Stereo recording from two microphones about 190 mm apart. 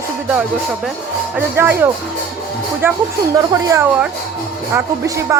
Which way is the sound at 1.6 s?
10° right (ahead or behind).